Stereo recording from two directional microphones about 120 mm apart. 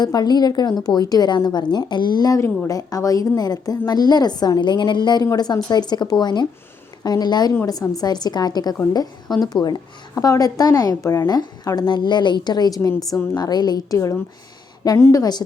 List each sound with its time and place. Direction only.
0.0 s a woman's voice: 35° left (ahead or behind)